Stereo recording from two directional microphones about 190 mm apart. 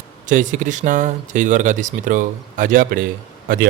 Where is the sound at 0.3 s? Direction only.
40° right (ahead or behind).